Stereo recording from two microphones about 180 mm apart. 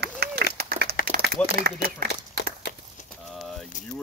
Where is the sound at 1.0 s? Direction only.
55° right (ahead or behind).